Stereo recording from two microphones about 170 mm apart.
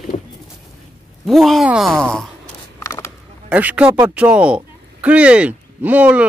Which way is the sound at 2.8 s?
15° left (ahead or behind).